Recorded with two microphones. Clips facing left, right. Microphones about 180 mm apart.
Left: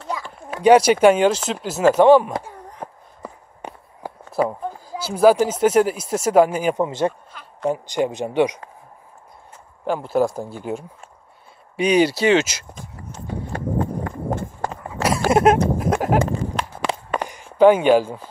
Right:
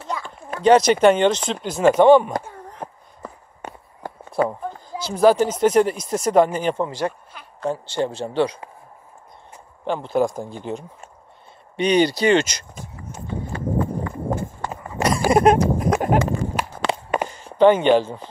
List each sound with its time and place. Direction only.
0.1 s a sound: 10° left (ahead or behind)
1.0 s speech: 10° left (ahead or behind)
3.2 s walk: 10° left (ahead or behind)
4.3 s speech: 5° left (ahead or behind)
6.9 s speech: 25° left (ahead or behind)
9.8 s speech: 5° left (ahead or behind)
15.0 s a sound: 15° right (ahead or behind)
15.3 s a sound: centre (ahead or behind)
17.6 s speech: 5° left (ahead or behind)